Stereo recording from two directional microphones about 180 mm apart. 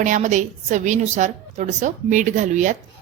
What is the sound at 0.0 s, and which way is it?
A woman's voice, 45° right (ahead or behind).